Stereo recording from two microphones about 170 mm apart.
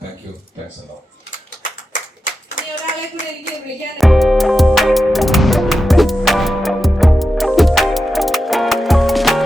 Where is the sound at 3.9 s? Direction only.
Centre (ahead or behind).